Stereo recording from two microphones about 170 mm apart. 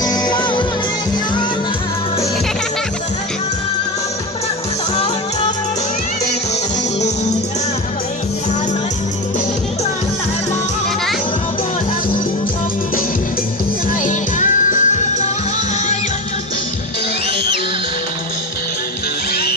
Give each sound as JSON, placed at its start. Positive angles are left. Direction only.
{"t": 0.0, "sound": "music", "side_deg": 25}
{"t": 14.0, "sound": "music", "side_deg": 50}